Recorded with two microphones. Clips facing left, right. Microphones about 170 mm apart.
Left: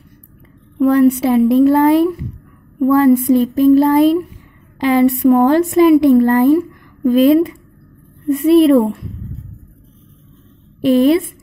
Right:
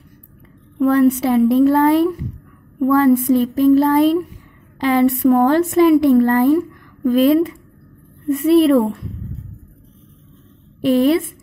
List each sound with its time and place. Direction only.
0.7 s a woman's voice: 15° left (ahead or behind)
10.8 s a woman's voice: 20° left (ahead or behind)